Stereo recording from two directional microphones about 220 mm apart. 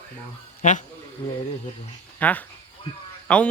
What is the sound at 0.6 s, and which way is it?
Speech, 35° left (ahead or behind).